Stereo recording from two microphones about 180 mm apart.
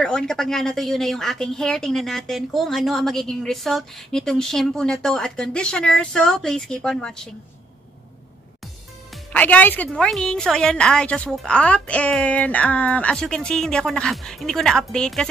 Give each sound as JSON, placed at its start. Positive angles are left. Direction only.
{"t": 0.0, "sound": "a woman's voice", "side_deg": 5}
{"t": 9.3, "sound": "a woman's voice", "side_deg": 10}